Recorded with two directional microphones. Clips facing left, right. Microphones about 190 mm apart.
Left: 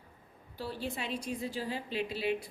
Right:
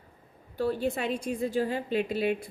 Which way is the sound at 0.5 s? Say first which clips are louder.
Right 10 dB; 50° right (ahead or behind).